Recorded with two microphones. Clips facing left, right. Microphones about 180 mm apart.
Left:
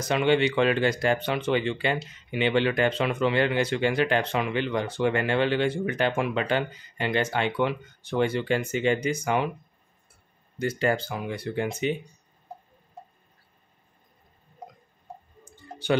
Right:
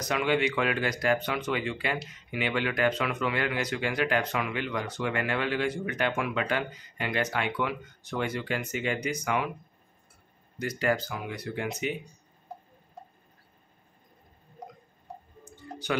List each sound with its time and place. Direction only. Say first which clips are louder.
0.0 s speech: left 4 dB; 30° left (ahead or behind)
10.6 s speech: left 3 dB; 25° left (ahead or behind)
15.4 s clicking: left 5 dB; 30° left (ahead or behind)